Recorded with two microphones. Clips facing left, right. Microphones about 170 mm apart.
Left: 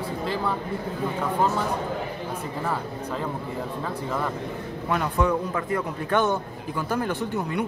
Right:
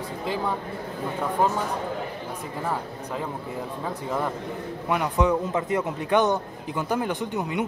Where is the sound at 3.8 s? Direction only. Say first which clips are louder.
Right 2 dB; 15° right (ahead or behind).